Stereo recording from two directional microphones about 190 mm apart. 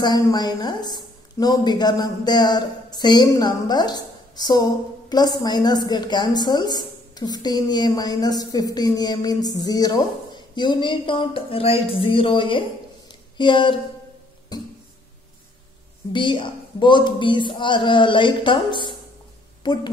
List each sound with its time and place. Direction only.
0.0 s a woman's voice: 20° left (ahead or behind)
16.1 s a woman's voice: 25° left (ahead or behind)